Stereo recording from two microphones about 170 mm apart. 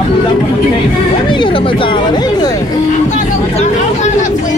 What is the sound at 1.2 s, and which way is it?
Chatter, 30° left (ahead or behind).